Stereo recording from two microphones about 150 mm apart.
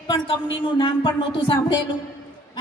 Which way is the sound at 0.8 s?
30° left (ahead or behind).